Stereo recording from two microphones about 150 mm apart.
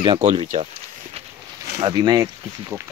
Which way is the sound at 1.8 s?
30° right (ahead or behind).